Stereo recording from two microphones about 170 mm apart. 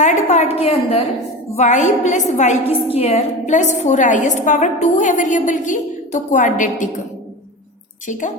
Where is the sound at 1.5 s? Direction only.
45° left (ahead or behind).